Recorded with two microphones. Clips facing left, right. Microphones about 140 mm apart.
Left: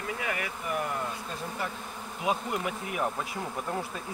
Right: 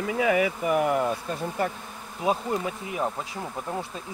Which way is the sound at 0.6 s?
90° right.